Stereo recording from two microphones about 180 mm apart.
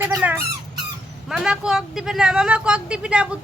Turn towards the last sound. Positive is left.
turn(degrees=-5)  # may be behind; listen again after turning